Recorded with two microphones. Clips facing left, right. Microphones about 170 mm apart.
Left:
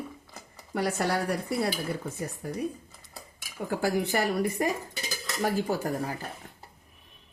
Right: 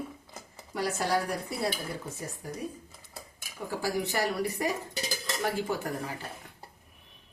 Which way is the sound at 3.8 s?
55° left (ahead or behind).